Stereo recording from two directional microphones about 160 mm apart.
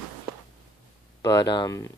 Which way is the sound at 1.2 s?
25° left (ahead or behind).